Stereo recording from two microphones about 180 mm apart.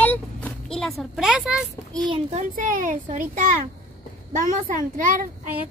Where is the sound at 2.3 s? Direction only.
45° right (ahead or behind).